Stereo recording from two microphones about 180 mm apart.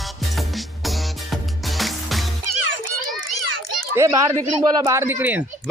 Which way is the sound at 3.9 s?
20° right (ahead or behind).